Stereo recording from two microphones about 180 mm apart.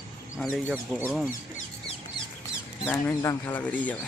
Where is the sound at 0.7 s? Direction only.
10° right (ahead or behind).